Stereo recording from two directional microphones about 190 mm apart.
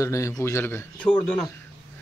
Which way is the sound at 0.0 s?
15° left (ahead or behind).